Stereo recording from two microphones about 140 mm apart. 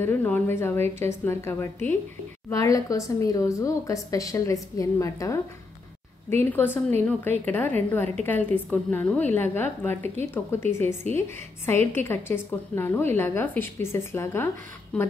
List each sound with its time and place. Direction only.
0.0 s a woman's voice: 15° left (ahead or behind)
14.9 s a woman's voice: 5° left (ahead or behind)